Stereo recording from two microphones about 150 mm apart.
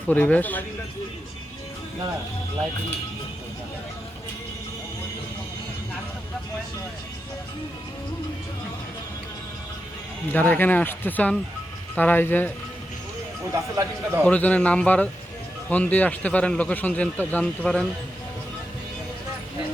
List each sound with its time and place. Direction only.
0.1 s a man's voice: 10° left (ahead or behind)
10.3 s a man's voice: 10° left (ahead or behind)
13.7 s a man's voice: 15° right (ahead or behind)
14.3 s a man's voice: 10° left (ahead or behind)